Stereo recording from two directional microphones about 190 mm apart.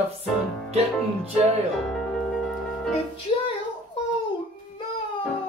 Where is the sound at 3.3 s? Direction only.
30° left (ahead or behind).